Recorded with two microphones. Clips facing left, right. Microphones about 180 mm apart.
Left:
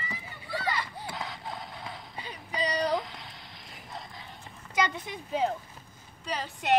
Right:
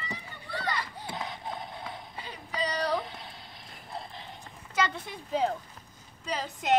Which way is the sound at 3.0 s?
25° right (ahead or behind).